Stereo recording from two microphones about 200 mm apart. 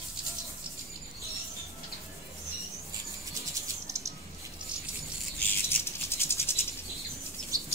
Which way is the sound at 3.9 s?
15° right (ahead or behind).